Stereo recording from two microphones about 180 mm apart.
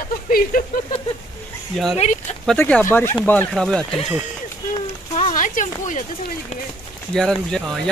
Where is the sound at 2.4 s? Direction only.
5° left (ahead or behind).